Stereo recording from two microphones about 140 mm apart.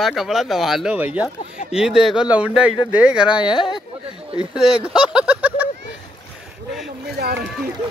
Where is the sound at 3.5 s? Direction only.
35° left (ahead or behind).